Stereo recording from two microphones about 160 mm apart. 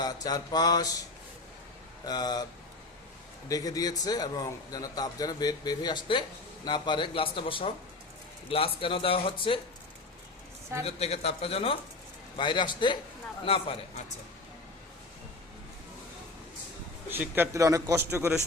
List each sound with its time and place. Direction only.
0.0 s speech: 25° left (ahead or behind)
2.0 s speech: 25° left (ahead or behind)
3.5 s speech: 20° left (ahead or behind)
10.8 s speech: 40° left (ahead or behind)
17.1 s a man's voice: 15° right (ahead or behind)